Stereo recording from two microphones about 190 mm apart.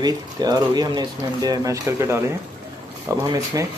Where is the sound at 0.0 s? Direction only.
20° right (ahead or behind).